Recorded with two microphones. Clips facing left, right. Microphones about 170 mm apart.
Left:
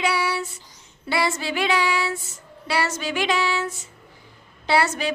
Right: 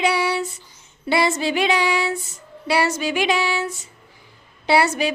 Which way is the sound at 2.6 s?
15° right (ahead or behind).